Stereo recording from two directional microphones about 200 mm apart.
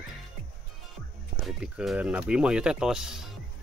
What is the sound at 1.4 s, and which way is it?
Speech, centre (ahead or behind).